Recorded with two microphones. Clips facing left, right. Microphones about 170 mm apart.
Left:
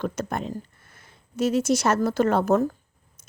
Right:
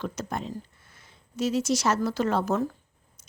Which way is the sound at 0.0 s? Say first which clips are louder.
Left 4 dB; 55° left (ahead or behind).